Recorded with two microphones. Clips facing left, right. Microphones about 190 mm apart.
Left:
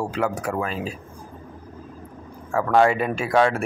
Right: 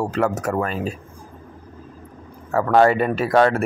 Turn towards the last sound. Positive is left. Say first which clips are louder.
# right 3 dB
turn(degrees=0)  # may be behind; listen again after turning